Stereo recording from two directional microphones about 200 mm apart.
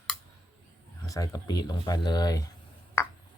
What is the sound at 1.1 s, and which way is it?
Speech, 20° left (ahead or behind).